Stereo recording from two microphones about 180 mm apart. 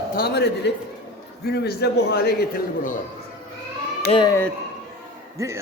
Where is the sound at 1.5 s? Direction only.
65° left (ahead or behind).